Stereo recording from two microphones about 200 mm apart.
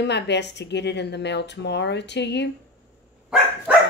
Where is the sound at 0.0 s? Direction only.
60° left (ahead or behind).